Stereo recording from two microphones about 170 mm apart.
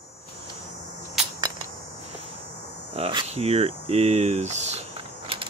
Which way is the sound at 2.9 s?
35° right (ahead or behind).